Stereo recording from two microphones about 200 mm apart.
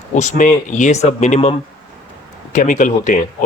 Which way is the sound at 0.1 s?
35° left (ahead or behind).